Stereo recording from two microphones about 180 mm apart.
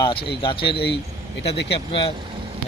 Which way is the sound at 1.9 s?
30° left (ahead or behind).